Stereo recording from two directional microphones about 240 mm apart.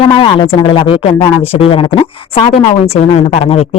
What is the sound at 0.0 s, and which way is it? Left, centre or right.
Speech, left.